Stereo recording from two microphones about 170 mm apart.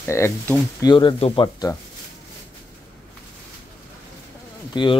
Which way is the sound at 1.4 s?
20° left (ahead or behind).